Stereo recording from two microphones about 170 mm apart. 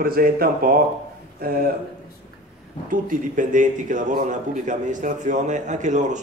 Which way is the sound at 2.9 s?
50° right (ahead or behind).